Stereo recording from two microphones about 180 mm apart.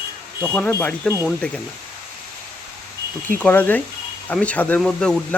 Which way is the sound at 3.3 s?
10° left (ahead or behind).